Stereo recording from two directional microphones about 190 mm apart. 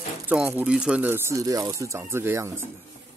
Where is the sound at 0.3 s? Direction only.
10° right (ahead or behind).